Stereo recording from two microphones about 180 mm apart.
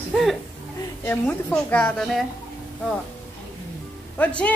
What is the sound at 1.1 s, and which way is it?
A woman's voice, 10° left (ahead or behind).